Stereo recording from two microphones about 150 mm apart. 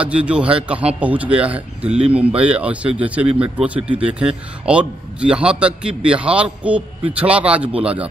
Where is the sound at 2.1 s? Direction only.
10° right (ahead or behind).